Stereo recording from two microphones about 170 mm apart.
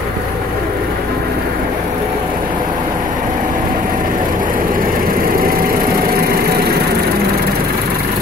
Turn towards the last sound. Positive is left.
turn(degrees=-65)  # may be behind; listen again after turning